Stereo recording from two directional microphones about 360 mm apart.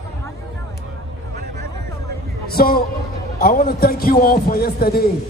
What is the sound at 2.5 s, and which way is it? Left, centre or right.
A man's voice, left.